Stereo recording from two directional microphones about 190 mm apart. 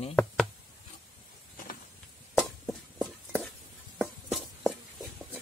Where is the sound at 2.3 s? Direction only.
Centre (ahead or behind).